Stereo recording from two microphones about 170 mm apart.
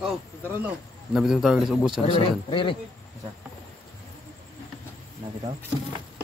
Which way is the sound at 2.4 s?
30° left (ahead or behind).